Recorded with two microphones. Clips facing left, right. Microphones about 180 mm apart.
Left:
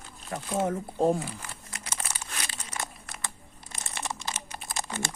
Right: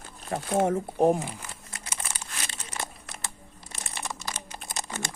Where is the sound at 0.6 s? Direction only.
20° right (ahead or behind).